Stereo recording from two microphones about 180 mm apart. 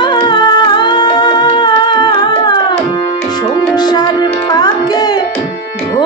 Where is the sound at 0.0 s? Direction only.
25° left (ahead or behind).